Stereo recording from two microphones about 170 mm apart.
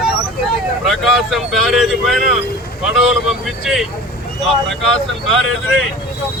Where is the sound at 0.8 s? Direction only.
Centre (ahead or behind).